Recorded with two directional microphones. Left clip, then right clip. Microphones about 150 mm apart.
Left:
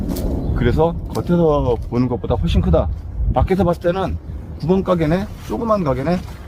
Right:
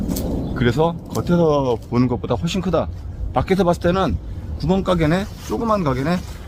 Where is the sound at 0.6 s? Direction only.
15° right (ahead or behind).